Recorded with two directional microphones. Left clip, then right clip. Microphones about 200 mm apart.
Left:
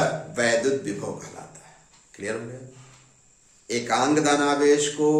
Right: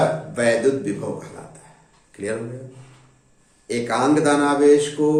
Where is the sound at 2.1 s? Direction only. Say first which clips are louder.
Right 4 dB; 10° left (ahead or behind).